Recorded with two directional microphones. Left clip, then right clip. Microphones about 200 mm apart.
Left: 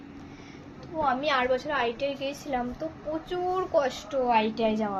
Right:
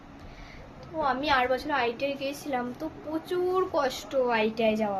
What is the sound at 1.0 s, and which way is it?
A woman's voice, 15° right (ahead or behind).